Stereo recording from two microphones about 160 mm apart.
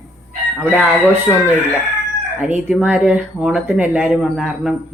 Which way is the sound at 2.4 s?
10° right (ahead or behind).